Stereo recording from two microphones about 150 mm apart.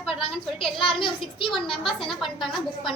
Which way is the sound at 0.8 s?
35° left (ahead or behind).